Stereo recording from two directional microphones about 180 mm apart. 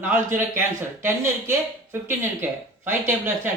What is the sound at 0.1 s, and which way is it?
Speech, 15° right (ahead or behind).